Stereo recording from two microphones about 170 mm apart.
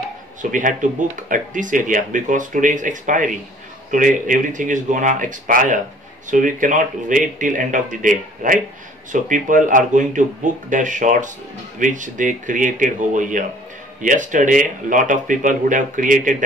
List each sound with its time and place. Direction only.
0.4 s speech: 50° right (ahead or behind)